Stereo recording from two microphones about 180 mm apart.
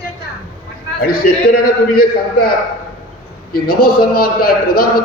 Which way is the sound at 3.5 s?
55° left (ahead or behind).